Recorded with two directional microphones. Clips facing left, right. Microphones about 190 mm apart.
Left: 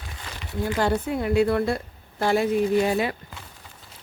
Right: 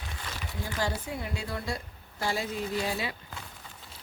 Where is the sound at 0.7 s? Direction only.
60° left (ahead or behind).